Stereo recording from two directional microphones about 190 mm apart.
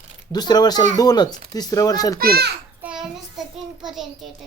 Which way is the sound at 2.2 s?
55° right (ahead or behind).